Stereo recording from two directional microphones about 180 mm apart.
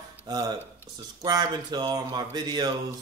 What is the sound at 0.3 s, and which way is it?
Speech, 20° right (ahead or behind).